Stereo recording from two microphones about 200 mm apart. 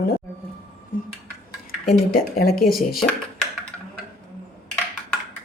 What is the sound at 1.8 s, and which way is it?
Speech, 50° left (ahead or behind).